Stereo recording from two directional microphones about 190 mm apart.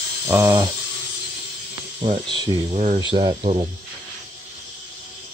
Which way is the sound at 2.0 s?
25° right (ahead or behind).